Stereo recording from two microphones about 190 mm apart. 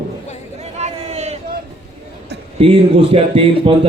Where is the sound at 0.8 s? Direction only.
35° right (ahead or behind).